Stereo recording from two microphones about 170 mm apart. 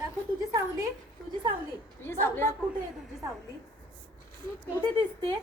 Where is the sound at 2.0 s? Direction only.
15° left (ahead or behind).